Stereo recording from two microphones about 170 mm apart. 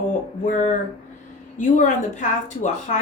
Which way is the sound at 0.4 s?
50° left (ahead or behind).